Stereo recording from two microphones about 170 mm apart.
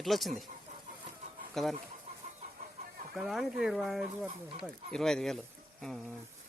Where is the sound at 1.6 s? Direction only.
Centre (ahead or behind).